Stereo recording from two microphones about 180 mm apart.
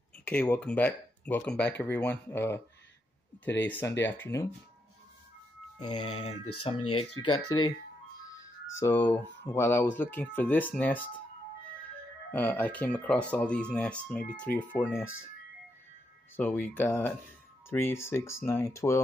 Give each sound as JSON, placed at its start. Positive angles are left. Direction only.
{"t": 0.2, "sound": "speech", "side_deg": 5}
{"t": 3.6, "sound": "speech", "side_deg": 10}
{"t": 5.9, "sound": "speech", "side_deg": 35}
{"t": 8.3, "sound": "music", "side_deg": 15}
{"t": 9.5, "sound": "speech", "side_deg": 10}
{"t": 12.3, "sound": "speech", "side_deg": 10}
{"t": 16.3, "sound": "speech", "side_deg": 10}